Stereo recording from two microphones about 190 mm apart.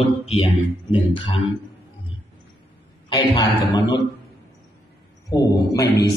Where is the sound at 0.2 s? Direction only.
30° left (ahead or behind).